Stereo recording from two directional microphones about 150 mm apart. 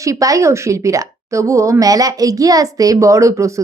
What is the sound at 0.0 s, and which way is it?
A woman's voice, 20° right (ahead or behind).